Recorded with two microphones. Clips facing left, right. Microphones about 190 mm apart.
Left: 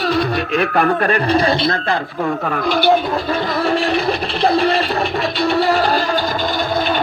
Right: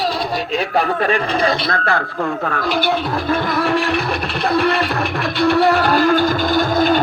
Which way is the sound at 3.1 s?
55° right (ahead or behind).